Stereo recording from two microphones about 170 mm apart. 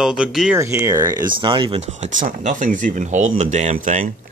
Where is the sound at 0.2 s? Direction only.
5° right (ahead or behind).